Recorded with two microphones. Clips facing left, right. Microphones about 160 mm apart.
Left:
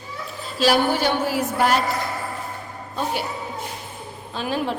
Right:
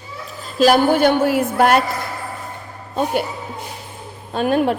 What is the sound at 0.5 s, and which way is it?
A woman's voice, 50° right (ahead or behind).